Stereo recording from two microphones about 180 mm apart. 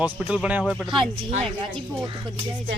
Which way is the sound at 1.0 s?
30° right (ahead or behind).